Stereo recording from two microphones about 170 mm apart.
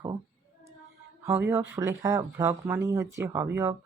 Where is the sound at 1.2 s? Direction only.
15° right (ahead or behind).